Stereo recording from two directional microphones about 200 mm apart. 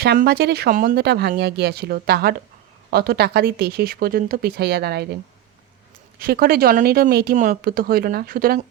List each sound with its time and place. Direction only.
0.0 s speech: 50° right (ahead or behind)
6.1 s speech: 50° right (ahead or behind)